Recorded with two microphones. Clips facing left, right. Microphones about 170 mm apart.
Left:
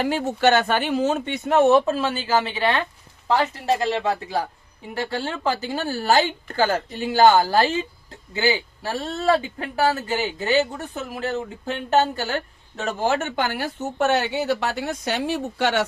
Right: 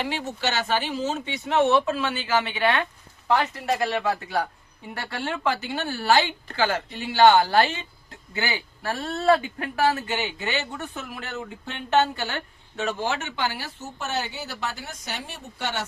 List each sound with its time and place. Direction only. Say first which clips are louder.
0.0 s speech: left 8 dB; 45° left (ahead or behind)
4.9 s speech: left 4 dB; 30° left (ahead or behind); by 15.9 s 75° left (ahead or behind)